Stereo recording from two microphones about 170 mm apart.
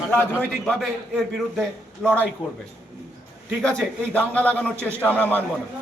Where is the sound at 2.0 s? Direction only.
5° left (ahead or behind).